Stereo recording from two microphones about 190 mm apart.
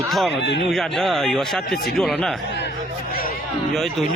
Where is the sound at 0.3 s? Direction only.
70° left (ahead or behind).